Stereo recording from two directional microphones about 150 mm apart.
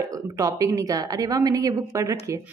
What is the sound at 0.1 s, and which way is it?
A woman's voice, 25° right (ahead or behind).